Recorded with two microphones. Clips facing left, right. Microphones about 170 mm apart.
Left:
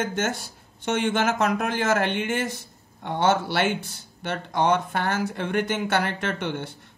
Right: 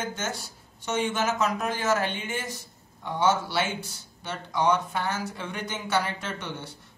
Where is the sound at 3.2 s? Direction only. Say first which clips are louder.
Left 3 dB; 60° left (ahead or behind).